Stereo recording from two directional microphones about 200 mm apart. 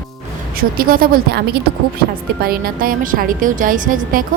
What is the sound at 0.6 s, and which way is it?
Speech, 45° right (ahead or behind).